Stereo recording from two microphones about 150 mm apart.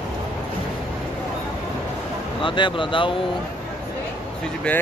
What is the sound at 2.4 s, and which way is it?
Speech, 30° left (ahead or behind).